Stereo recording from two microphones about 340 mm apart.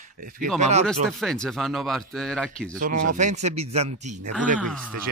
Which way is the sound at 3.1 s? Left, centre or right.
Right.